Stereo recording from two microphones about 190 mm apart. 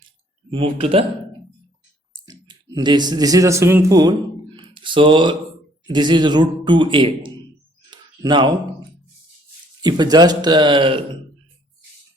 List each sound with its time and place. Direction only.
0.5 s speech: 30° right (ahead or behind)
2.2 s speech: 25° right (ahead or behind)
4.5 s a sound: 25° right (ahead or behind)
5.9 s a man's voice: 25° right (ahead or behind)
7.9 s a sound: 25° right (ahead or behind)
9.8 s a man's voice: 20° right (ahead or behind)